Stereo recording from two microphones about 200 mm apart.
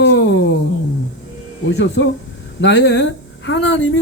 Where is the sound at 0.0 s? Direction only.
60° left (ahead or behind).